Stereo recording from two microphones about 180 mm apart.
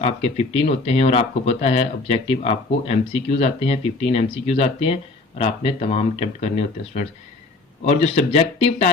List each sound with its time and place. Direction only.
0.0 s speech: 35° left (ahead or behind)